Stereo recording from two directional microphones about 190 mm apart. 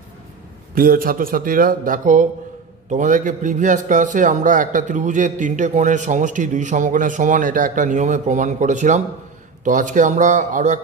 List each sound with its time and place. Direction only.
0.7 s a man's voice: 50° right (ahead or behind)